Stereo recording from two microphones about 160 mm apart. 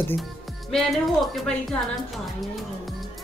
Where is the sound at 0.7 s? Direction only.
Centre (ahead or behind).